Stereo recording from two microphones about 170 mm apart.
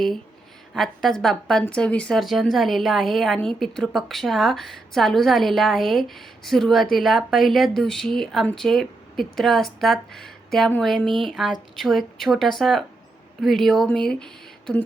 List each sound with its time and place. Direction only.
0.7 s a woman's voice: centre (ahead or behind)